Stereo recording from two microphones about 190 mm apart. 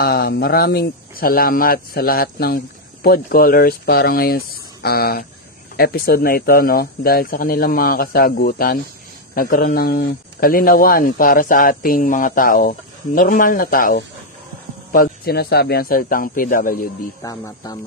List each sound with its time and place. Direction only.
0.0 s speech: 55° left (ahead or behind)
17.2 s speech: 15° left (ahead or behind)